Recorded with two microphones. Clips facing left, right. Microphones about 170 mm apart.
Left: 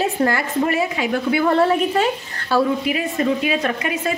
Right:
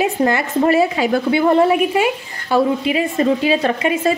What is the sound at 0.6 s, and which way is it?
Speech, 35° right (ahead or behind).